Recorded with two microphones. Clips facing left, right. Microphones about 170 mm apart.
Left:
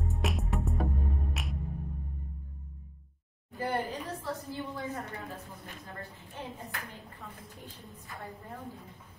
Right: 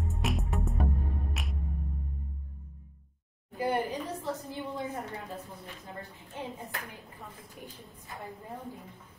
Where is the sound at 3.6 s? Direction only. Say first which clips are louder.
Right 3 dB; 15° right (ahead or behind).